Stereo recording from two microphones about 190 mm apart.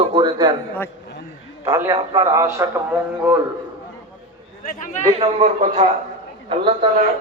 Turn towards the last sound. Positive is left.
turn(degrees=-30)  # may be behind; listen again after turning